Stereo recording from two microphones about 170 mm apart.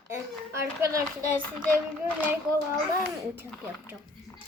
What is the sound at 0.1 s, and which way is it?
Speech, 15° right (ahead or behind).